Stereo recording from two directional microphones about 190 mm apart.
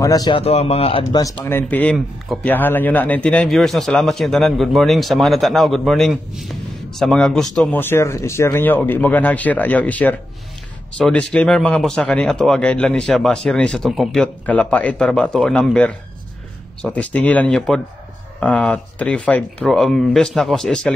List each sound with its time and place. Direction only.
0.0 s speech: 20° left (ahead or behind)
0.4 s speech: 35° left (ahead or behind); by 20.9 s 5° left (ahead or behind)